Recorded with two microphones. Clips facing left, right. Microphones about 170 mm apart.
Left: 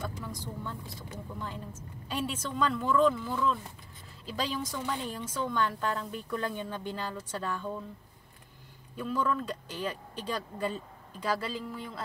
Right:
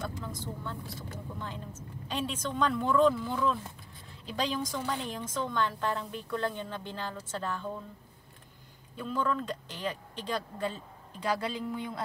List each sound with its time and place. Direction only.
0.0 s speech: 10° left (ahead or behind)
8.9 s speech: 10° left (ahead or behind)